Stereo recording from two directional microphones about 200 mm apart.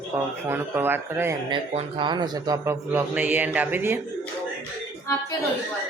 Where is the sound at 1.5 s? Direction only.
25° right (ahead or behind).